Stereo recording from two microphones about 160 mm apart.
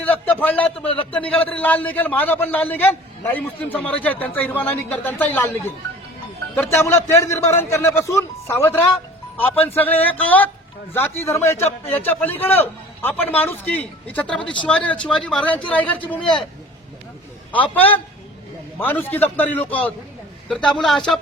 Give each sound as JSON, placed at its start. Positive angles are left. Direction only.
{"t": 0.0, "sound": "a man's voice", "side_deg": 10}
{"t": 14.4, "sound": "speech", "side_deg": 30}
{"t": 14.7, "sound": "a man's voice", "side_deg": 5}
{"t": 17.5, "sound": "a man's voice", "side_deg": 10}